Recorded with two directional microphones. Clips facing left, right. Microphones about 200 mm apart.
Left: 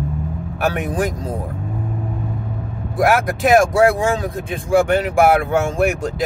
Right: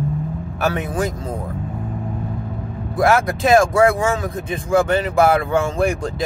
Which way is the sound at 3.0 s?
10° left (ahead or behind).